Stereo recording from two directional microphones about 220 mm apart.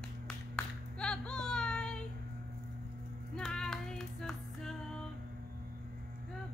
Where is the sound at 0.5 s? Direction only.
5° left (ahead or behind).